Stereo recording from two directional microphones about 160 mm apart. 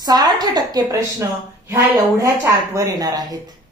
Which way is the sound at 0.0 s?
25° right (ahead or behind).